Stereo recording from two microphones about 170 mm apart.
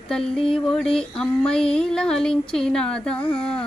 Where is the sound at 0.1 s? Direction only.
5° left (ahead or behind).